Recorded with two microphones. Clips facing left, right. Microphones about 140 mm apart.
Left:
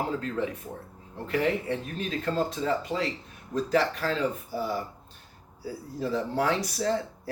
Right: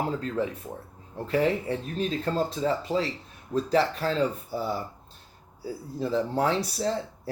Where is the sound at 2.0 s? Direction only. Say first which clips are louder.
Right 2 dB; 30° right (ahead or behind).